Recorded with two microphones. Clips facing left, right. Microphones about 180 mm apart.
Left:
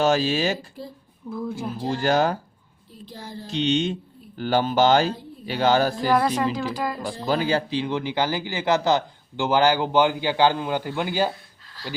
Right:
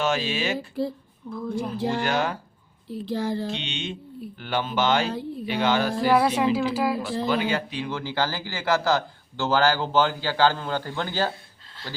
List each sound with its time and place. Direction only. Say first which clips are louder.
0.0 s speech: left 5 dB; 40° left (ahead or behind)
1.3 s speech: even; 5° left (ahead or behind)
2.0 s speech: left 9 dB; 40° left (ahead or behind)
2.9 s a child's voice: right 11 dB; 75° right (ahead or behind)
3.5 s speech: left 9 dB; 40° left (ahead or behind)
6.1 s speech: right 4 dB; 5° right (ahead or behind)
7.3 s speech: left 5 dB; 35° left (ahead or behind); by 11.3 s 15° left (ahead or behind)
11.8 s speech: left 3 dB; 25° right (ahead or behind)